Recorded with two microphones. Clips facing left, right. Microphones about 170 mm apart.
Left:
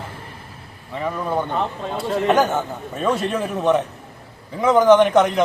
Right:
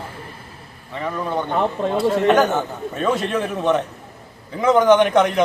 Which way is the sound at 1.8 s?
60° right (ahead or behind).